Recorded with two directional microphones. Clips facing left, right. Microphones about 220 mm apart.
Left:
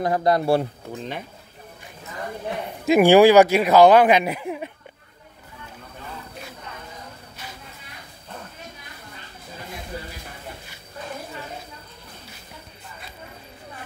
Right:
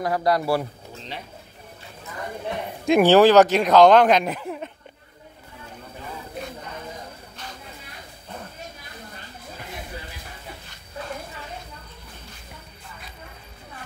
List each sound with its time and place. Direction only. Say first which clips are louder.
0.0 s speech: left 2 dB; 20° left (ahead or behind)
2.8 s speech: left 2 dB; 5° left (ahead or behind)